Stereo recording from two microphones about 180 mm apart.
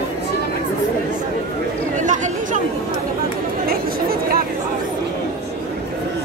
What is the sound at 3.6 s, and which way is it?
Chatter, 55° right (ahead or behind).